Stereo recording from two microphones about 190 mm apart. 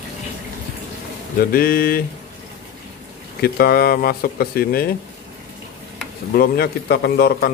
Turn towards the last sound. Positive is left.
turn(degrees=55)  # may be behind; listen again after turning